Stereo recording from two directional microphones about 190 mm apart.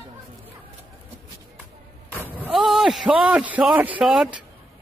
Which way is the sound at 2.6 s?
Centre (ahead or behind).